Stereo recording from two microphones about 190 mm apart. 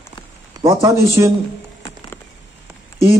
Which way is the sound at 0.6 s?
15° right (ahead or behind).